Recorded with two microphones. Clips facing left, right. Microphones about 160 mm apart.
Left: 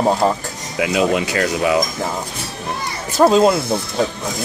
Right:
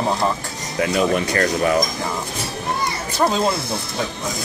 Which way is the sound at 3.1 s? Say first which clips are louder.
Left 7 dB; 60° left (ahead or behind).